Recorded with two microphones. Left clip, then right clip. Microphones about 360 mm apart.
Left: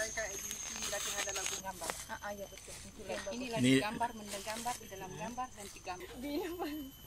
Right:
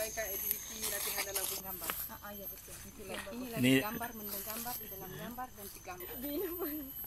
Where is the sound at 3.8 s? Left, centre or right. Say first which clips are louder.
Left 4 dB; left.